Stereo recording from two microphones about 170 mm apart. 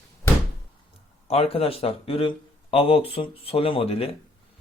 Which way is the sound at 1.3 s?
35° left (ahead or behind).